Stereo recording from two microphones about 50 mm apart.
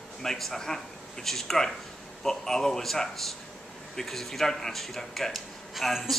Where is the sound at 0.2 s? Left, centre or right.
Centre.